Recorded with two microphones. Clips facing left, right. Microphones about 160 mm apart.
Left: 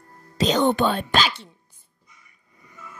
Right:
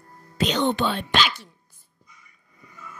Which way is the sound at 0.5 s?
45° left (ahead or behind).